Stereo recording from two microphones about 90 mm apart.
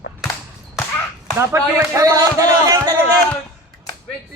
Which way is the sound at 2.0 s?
40° right (ahead or behind).